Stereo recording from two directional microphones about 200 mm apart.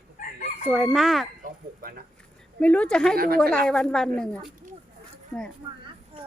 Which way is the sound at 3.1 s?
45° right (ahead or behind).